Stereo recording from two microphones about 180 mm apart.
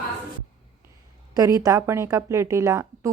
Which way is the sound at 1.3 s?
20° right (ahead or behind).